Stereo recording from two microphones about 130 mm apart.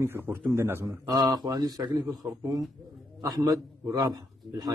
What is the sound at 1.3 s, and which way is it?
A man's voice, 30° right (ahead or behind).